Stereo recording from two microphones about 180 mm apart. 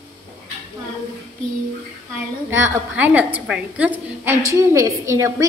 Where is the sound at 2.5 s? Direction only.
10° right (ahead or behind).